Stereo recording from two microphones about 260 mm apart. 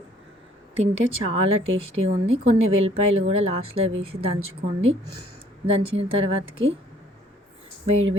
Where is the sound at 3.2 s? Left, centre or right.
Right.